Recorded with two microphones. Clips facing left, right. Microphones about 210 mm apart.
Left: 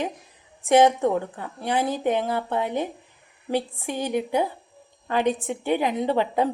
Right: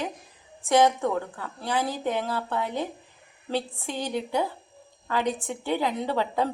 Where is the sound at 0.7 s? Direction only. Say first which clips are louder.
Left 4 dB; 15° left (ahead or behind).